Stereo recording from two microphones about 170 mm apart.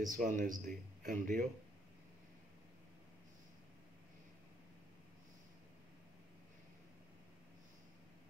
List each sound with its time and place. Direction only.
0.0 s speech: 50° right (ahead or behind)